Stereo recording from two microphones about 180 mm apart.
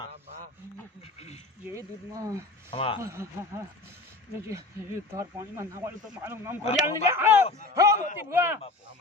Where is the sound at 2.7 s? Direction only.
30° left (ahead or behind).